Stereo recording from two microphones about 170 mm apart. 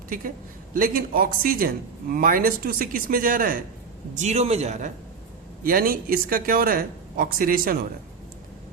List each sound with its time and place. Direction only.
0.7 s speech: 55° right (ahead or behind)
4.2 s a man's voice: 40° right (ahead or behind)
5.6 s speech: 60° right (ahead or behind)